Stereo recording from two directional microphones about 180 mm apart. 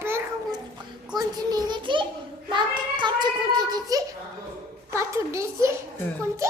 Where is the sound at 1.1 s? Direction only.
20° right (ahead or behind).